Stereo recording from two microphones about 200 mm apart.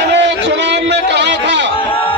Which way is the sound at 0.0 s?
60° right (ahead or behind).